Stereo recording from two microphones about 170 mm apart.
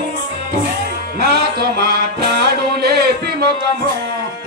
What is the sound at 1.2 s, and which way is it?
Music, 70° right (ahead or behind).